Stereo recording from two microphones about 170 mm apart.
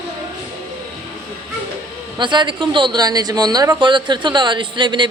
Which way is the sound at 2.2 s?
25° right (ahead or behind).